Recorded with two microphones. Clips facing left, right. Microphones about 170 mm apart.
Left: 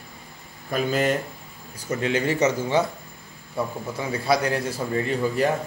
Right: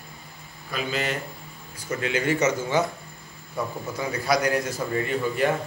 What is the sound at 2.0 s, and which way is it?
Speech, 35° left (ahead or behind).